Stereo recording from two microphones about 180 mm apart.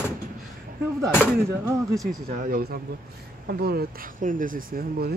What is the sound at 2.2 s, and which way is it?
Speech, 50° right (ahead or behind).